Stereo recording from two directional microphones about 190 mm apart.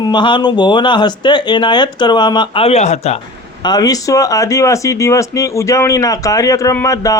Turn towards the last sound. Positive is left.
turn(degrees=15)  # may be behind; listen again after turning